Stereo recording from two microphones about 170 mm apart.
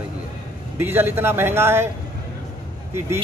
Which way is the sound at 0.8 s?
10° right (ahead or behind).